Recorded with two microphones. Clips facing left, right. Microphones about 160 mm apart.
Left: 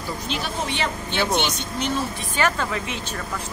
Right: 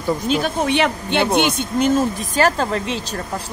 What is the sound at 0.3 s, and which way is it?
Speech, 55° right (ahead or behind).